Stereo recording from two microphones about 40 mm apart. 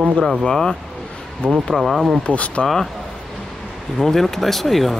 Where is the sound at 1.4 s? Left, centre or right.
Left.